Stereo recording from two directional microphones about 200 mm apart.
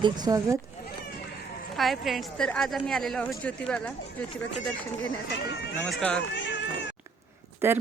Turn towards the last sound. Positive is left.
turn(degrees=-10)  # may be behind; listen again after turning